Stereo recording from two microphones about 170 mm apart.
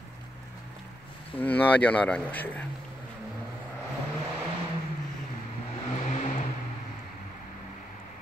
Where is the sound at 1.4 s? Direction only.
10° left (ahead or behind).